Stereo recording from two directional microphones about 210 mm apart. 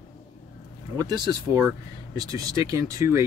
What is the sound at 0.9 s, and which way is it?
Speech, 20° right (ahead or behind).